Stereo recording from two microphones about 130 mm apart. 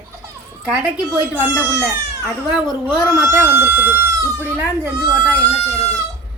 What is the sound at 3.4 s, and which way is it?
A woman's voice, 20° right (ahead or behind).